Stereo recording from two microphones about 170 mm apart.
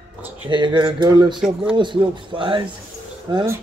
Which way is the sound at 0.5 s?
25° right (ahead or behind).